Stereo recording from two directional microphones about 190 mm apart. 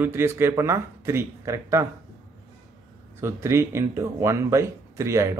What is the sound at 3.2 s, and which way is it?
Speech, 15° right (ahead or behind).